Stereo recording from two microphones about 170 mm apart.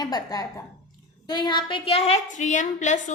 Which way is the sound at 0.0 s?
25° left (ahead or behind).